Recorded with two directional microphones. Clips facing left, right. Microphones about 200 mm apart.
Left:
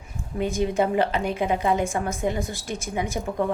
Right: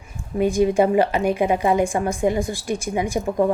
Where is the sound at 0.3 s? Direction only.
10° right (ahead or behind).